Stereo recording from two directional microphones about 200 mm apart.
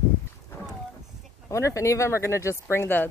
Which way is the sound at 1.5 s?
15° left (ahead or behind).